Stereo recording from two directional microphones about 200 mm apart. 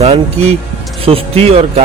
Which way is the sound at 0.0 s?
30° right (ahead or behind).